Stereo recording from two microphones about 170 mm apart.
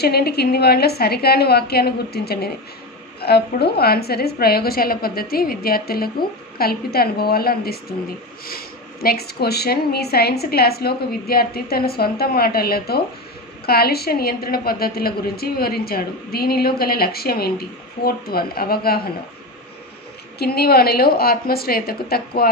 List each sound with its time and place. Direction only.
0.0 s a woman's voice: 70° left (ahead or behind)
20.3 s a woman's voice: 65° left (ahead or behind)